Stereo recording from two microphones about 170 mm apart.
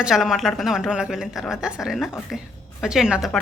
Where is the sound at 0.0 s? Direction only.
5° right (ahead or behind).